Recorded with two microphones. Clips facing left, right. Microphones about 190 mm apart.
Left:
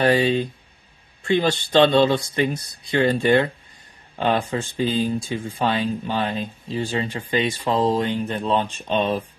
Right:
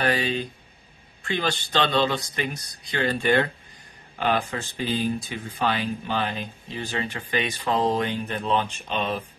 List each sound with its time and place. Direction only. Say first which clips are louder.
0.0 s speech: left 7 dB; 25° left (ahead or behind)